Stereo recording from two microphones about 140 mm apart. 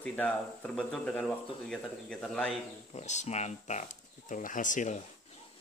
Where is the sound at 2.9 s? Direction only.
55° left (ahead or behind).